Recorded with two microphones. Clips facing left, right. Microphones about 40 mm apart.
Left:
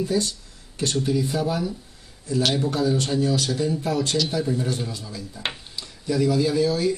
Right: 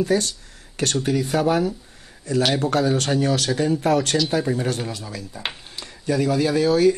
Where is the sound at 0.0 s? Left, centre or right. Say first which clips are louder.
Right 3 dB; right.